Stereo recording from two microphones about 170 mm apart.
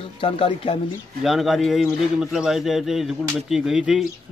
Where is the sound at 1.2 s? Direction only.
Centre (ahead or behind).